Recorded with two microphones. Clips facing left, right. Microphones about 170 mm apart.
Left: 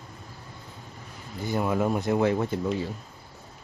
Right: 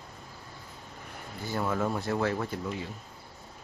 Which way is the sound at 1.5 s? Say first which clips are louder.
Left 4 dB; 15° left (ahead or behind).